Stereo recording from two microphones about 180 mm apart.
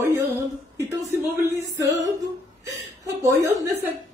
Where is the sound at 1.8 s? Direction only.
20° right (ahead or behind).